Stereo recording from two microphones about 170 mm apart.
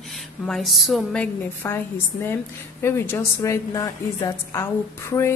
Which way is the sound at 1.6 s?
15° left (ahead or behind).